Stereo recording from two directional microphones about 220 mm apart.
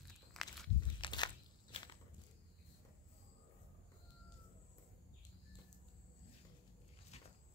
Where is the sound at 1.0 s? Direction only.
20° left (ahead or behind).